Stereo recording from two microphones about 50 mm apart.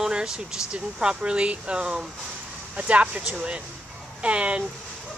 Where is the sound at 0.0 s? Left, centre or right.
Centre.